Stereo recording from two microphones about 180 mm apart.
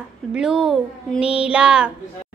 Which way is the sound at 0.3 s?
5° right (ahead or behind).